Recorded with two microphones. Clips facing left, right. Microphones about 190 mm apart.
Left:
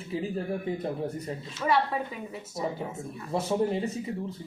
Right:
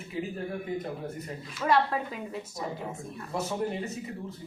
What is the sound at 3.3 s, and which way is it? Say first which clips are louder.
Speech: left 3 dB; 30° left (ahead or behind).